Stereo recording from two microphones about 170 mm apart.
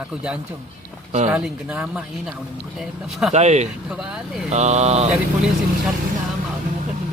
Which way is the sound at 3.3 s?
40° right (ahead or behind).